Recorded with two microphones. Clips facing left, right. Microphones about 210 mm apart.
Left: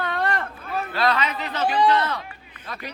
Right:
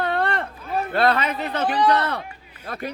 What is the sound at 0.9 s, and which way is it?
A man's voice, 55° right (ahead or behind).